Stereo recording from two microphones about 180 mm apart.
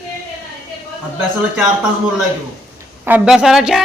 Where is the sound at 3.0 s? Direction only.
5° right (ahead or behind).